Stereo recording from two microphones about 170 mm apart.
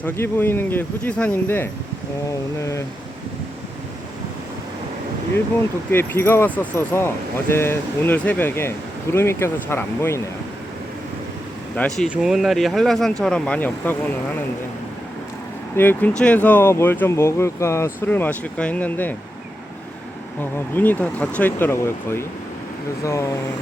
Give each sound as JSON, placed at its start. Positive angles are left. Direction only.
{"t": 0.0, "sound": "speech", "side_deg": 10}
{"t": 5.9, "sound": "speech", "side_deg": 15}
{"t": 11.9, "sound": "speech", "side_deg": -5}
{"t": 15.7, "sound": "speech", "side_deg": 10}
{"t": 20.4, "sound": "speech", "side_deg": 10}